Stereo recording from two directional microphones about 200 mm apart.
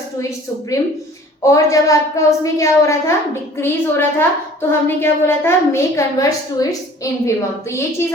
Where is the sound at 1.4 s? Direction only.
15° left (ahead or behind).